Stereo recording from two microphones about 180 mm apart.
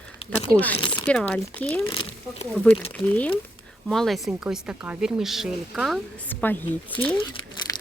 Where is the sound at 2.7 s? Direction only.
10° left (ahead or behind).